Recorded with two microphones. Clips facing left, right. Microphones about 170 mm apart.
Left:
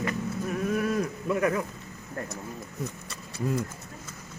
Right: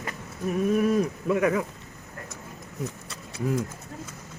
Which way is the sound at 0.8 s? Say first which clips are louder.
Right 4 dB; 20° right (ahead or behind).